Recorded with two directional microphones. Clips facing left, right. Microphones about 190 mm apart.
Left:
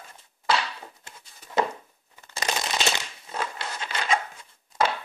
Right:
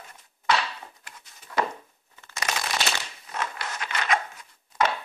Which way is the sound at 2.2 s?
30° left (ahead or behind).